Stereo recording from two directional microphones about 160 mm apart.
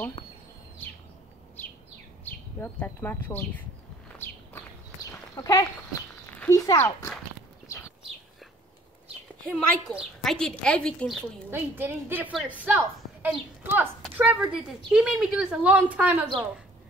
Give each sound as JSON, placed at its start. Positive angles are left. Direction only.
{"t": 0.8, "sound": "bird", "side_deg": 10}
{"t": 2.2, "sound": "speech", "side_deg": 10}
{"t": 5.3, "sound": "speech", "side_deg": 20}
{"t": 9.4, "sound": "a child's voice", "side_deg": 5}
{"t": 11.5, "sound": "a woman's voice", "side_deg": -15}